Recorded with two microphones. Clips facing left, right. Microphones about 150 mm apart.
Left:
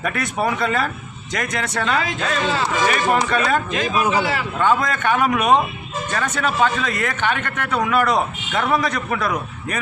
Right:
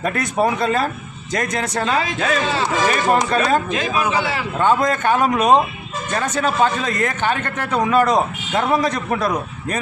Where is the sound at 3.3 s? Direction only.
30° right (ahead or behind).